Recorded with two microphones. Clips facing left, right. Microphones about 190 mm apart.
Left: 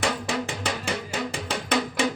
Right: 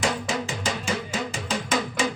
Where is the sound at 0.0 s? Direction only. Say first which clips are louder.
Even; 60° left (ahead or behind).